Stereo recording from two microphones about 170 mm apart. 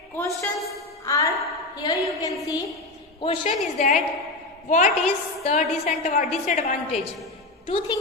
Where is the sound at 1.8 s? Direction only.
20° left (ahead or behind).